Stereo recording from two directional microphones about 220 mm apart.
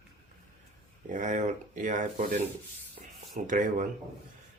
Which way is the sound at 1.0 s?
35° right (ahead or behind).